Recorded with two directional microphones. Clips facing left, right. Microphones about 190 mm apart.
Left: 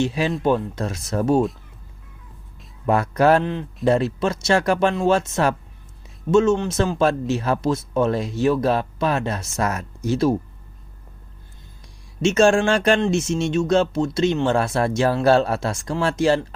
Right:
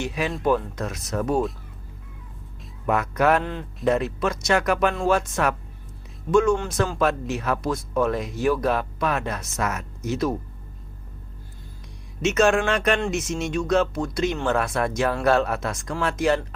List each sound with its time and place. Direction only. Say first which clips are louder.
0.0 s speech: left 4 dB; 25° left (ahead or behind)
2.8 s speech: left 4 dB; 30° left (ahead or behind)
12.2 s speech: left 4 dB; 30° left (ahead or behind)